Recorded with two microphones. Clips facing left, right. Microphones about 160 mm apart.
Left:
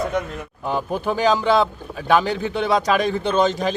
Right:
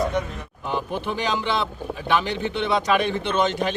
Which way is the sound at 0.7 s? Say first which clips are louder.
Left 4 dB; 40° left (ahead or behind).